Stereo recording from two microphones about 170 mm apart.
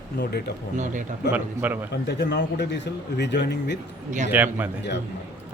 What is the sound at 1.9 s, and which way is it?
Speech, 85° left.